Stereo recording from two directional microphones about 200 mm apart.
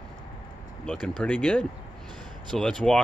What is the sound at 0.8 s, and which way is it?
Speech, 5° left (ahead or behind).